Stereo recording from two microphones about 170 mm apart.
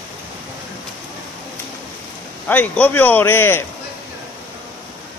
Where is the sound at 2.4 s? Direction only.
10° left (ahead or behind).